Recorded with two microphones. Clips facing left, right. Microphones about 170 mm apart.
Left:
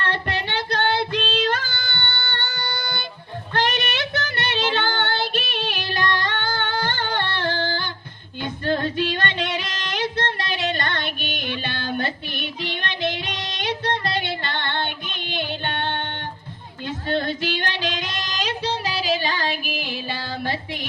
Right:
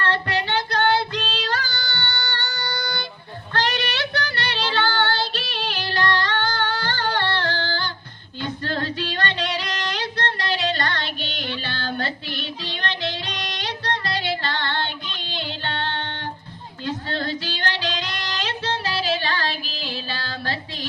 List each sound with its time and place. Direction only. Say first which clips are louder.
0.0 s child singing: right 2 dB; 20° left (ahead or behind)
1.7 s a sound: right 1 dB; 25° left (ahead or behind)
2.6 s music: right 2 dB; 25° left (ahead or behind)
3.5 s child singing: left 1 dB; 20° left (ahead or behind)
8.4 s female singing: left 3 dB; 20° left (ahead or behind)
12.5 s music: left 3 dB; 20° left (ahead or behind)
16.8 s female singing: left 3 dB; 20° left (ahead or behind)
17.7 s child singing: left 1 dB; 50° left (ahead or behind)
18.0 s music: left 1 dB; 20° left (ahead or behind)